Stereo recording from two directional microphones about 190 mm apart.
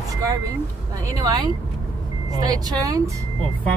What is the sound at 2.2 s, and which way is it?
Speech, 20° right (ahead or behind).